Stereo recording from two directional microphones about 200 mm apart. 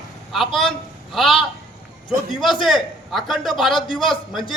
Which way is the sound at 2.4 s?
Centre (ahead or behind).